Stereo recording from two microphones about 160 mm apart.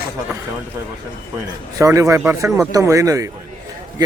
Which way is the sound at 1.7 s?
20° right (ahead or behind).